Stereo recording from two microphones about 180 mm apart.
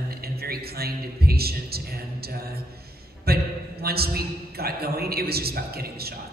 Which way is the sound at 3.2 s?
60° right (ahead or behind).